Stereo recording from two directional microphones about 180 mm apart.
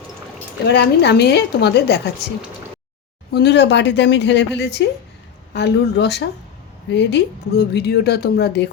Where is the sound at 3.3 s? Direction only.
65° left (ahead or behind).